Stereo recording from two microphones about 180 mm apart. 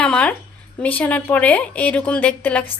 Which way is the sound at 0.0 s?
5° left (ahead or behind).